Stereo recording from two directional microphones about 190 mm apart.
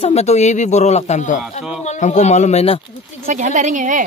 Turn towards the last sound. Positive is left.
turn(degrees=-40)  # may be behind; listen again after turning